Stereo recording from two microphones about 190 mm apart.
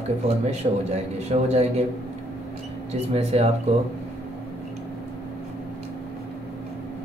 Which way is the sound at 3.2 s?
35° right (ahead or behind).